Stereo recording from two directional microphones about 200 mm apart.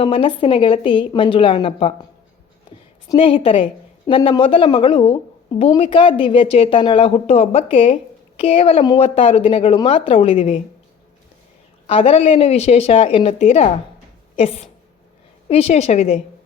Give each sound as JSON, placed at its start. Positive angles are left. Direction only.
{"t": 0.0, "sound": "a woman's voice", "side_deg": 25}
{"t": 3.1, "sound": "a woman's voice", "side_deg": 25}
{"t": 11.9, "sound": "a woman's voice", "side_deg": 30}